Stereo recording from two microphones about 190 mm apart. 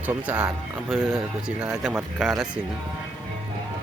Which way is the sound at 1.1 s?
15° right (ahead or behind).